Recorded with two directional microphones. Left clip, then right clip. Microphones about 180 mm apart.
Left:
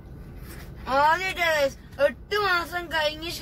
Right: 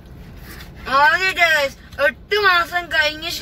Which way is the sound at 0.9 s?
10° left (ahead or behind).